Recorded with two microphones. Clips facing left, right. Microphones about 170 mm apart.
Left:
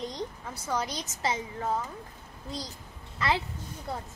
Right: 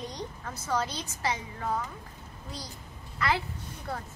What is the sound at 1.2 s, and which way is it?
Speech, 25° left (ahead or behind).